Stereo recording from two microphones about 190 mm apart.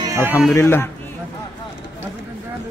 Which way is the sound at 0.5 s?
15° left (ahead or behind).